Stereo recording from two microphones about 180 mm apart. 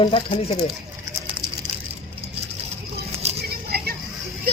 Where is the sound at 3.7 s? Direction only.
60° right (ahead or behind).